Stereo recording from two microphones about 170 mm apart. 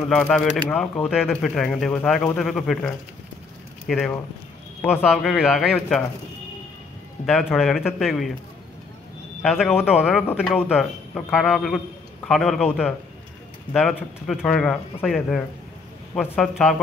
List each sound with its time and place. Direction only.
0.1 s speech: 5° left (ahead or behind)
7.2 s speech: 50° left (ahead or behind)
7.5 s speech: centre (ahead or behind)
9.4 s speech: centre (ahead or behind)